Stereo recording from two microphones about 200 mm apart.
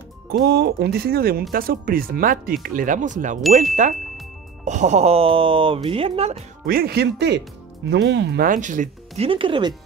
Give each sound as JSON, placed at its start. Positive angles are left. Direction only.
{"t": 0.3, "sound": "speech", "side_deg": -55}
{"t": 4.6, "sound": "speech", "side_deg": -35}
{"t": 6.6, "sound": "speech", "side_deg": -50}